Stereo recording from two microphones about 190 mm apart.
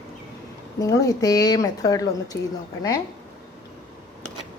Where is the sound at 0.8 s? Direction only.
20° left (ahead or behind).